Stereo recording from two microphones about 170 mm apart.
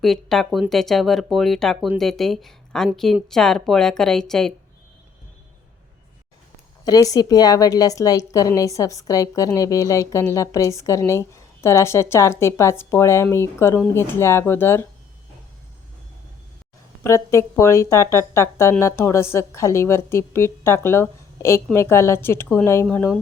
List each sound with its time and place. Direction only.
0.0 s speech: centre (ahead or behind)
6.8 s a woman's voice: 20° left (ahead or behind)
17.0 s a woman's voice: 15° left (ahead or behind)